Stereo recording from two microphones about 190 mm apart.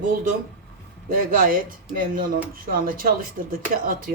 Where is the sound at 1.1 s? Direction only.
50° right (ahead or behind).